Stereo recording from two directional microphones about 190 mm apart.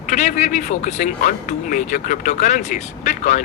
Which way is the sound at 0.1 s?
40° left (ahead or behind).